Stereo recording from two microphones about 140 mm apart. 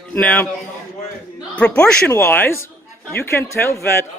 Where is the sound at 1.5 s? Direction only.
10° left (ahead or behind).